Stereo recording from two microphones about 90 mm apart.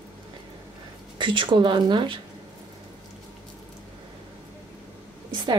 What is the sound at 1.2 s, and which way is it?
Speech, 65° right (ahead or behind).